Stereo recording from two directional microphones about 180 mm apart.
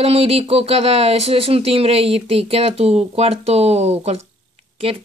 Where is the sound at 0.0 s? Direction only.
35° right (ahead or behind).